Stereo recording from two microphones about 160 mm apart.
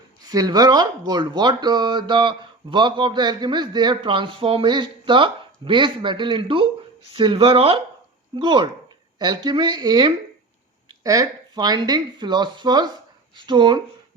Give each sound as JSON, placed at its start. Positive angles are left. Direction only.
{"t": 0.2, "sound": "speech", "side_deg": -25}